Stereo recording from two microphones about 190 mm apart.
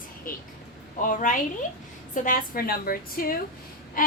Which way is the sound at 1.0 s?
45° left (ahead or behind).